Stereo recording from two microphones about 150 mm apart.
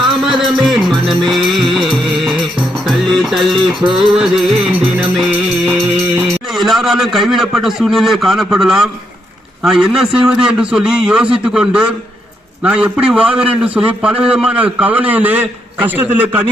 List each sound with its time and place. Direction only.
0.1 s music: centre (ahead or behind)
6.5 s a man's voice: centre (ahead or behind)